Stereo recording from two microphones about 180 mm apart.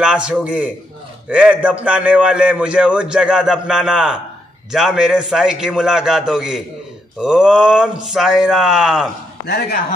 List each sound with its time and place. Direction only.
0.0 s a man's voice: 5° right (ahead or behind)
9.5 s speech: 55° left (ahead or behind)